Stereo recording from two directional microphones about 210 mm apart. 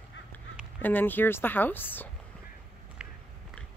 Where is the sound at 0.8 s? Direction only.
10° left (ahead or behind).